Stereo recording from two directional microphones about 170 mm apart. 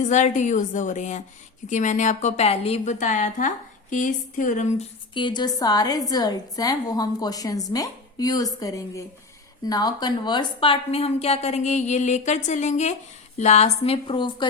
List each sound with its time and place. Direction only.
0.0 s a woman's voice: 45° left (ahead or behind)
5.1 s a woman's voice: 25° left (ahead or behind)